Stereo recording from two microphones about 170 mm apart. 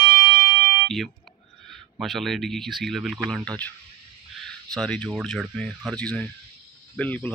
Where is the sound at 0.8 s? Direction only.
Centre (ahead or behind).